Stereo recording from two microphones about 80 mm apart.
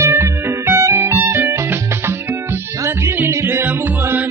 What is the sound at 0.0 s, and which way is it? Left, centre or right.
Music, right.